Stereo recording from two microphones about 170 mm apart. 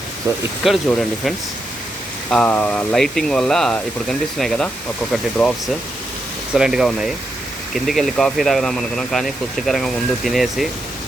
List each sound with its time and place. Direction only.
0.3 s speech: 15° right (ahead or behind)
0.6 s speech: centre (ahead or behind)
2.3 s speech: 5° left (ahead or behind)